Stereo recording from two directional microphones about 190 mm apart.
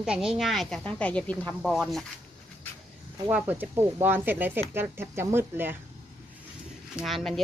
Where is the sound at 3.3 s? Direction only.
10° right (ahead or behind).